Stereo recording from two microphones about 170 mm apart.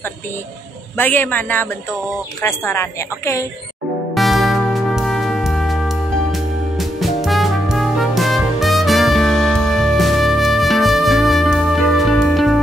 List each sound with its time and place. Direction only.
0.9 s a woman's voice: 10° left (ahead or behind)
4.1 s music: centre (ahead or behind)